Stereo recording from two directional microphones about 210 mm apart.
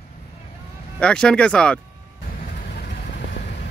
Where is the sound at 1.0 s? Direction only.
5° left (ahead or behind).